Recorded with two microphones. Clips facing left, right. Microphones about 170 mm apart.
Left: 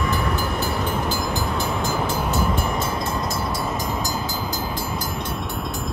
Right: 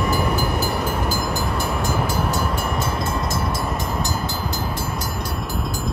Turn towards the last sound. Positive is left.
turn(degrees=0)  # may be behind; listen again after turning